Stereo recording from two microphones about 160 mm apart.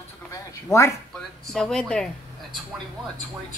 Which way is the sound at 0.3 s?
20° left (ahead or behind).